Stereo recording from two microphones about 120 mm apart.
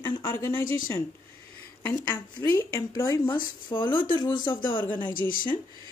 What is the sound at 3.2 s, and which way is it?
Speech, 40° left (ahead or behind).